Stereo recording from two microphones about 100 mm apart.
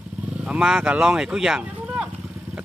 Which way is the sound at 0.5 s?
10° right (ahead or behind).